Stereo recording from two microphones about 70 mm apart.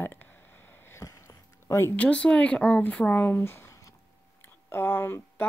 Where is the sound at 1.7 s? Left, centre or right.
Left.